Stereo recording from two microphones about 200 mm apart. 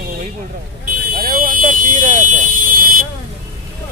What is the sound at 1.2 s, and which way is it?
Vehicle, 45° right (ahead or behind).